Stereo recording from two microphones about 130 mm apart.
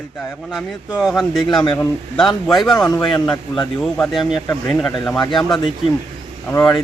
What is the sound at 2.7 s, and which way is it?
Speech, 30° left (ahead or behind).